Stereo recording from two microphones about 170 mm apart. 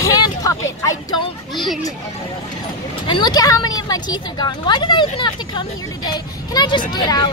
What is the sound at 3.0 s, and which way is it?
Speech, 25° left (ahead or behind).